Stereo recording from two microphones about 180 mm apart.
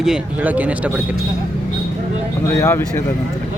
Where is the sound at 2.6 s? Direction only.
15° left (ahead or behind).